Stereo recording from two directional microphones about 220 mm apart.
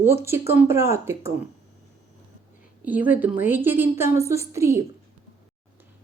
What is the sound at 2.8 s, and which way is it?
A woman's voice, 5° right (ahead or behind).